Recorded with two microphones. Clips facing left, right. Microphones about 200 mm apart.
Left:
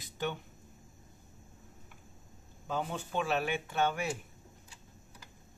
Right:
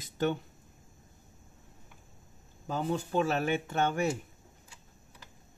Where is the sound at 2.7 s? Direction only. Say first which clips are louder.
Right 5 dB; 40° right (ahead or behind).